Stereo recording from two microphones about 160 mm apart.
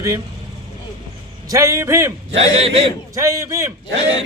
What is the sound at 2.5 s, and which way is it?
Speech, 40° right (ahead or behind).